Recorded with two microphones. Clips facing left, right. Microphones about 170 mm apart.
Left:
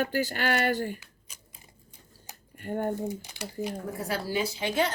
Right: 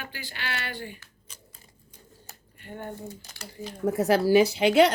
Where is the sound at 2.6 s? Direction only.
45° left (ahead or behind).